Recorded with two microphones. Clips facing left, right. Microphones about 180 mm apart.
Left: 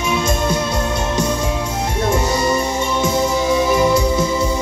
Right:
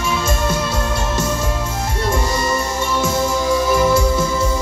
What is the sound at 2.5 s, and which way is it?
Music, 15° left (ahead or behind).